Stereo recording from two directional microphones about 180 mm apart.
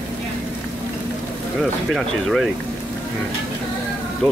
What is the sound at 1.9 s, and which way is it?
Speech, centre (ahead or behind).